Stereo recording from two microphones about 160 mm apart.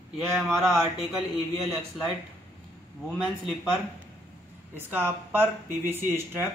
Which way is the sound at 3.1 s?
5° left (ahead or behind).